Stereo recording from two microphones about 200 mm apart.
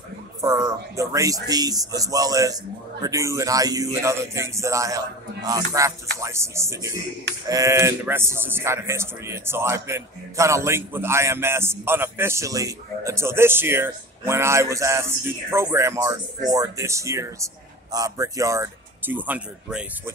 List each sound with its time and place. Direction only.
0.4 s speech: 15° right (ahead or behind)